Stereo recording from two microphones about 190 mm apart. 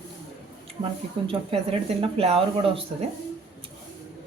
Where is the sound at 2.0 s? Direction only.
30° right (ahead or behind).